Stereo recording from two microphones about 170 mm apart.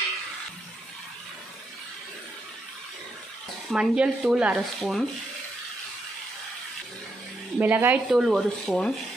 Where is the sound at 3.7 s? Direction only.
5° right (ahead or behind).